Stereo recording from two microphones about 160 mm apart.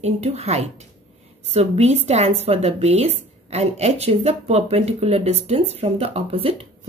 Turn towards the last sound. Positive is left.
turn(degrees=-35)  # may be behind; listen again after turning